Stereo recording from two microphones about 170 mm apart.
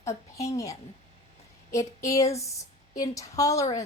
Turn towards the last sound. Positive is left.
turn(degrees=20)  # may be behind; listen again after turning